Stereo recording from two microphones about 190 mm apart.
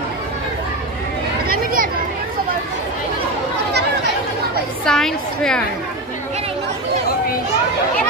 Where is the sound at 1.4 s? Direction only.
50° right (ahead or behind).